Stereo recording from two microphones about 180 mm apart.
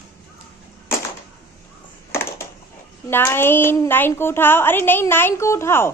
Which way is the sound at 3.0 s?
10° left (ahead or behind).